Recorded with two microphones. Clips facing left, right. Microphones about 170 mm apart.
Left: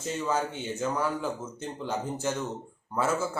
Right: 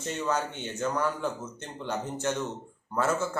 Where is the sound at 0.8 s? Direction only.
5° left (ahead or behind).